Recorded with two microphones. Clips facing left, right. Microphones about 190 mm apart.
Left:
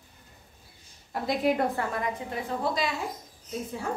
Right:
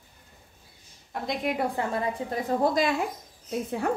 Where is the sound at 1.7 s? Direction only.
30° right (ahead or behind).